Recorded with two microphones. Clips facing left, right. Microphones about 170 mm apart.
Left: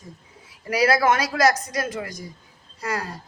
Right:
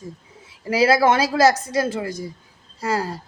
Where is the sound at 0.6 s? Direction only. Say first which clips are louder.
Right 3 dB; 25° right (ahead or behind).